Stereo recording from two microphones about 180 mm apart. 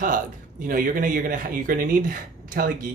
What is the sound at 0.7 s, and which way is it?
Speech, 50° right (ahead or behind).